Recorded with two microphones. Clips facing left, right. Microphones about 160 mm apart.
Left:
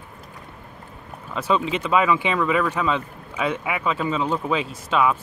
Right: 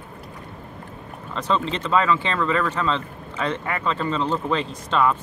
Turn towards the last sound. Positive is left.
turn(degrees=5)  # may be behind; listen again after turning